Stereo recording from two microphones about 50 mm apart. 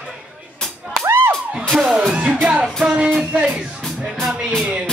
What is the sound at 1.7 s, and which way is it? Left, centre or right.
Music, centre.